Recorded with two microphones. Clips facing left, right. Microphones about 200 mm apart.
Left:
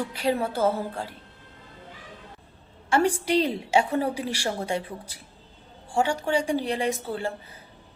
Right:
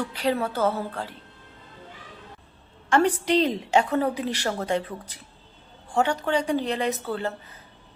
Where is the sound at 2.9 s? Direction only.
10° left (ahead or behind).